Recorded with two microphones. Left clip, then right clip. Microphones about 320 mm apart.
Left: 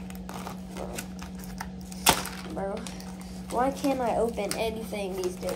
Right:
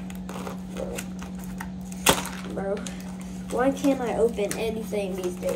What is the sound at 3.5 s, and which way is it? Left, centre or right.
Speech, centre.